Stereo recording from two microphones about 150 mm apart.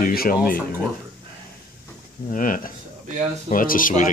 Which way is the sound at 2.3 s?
65° left (ahead or behind).